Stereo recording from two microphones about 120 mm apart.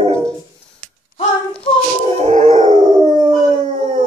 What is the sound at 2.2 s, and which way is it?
Howl, 85° right.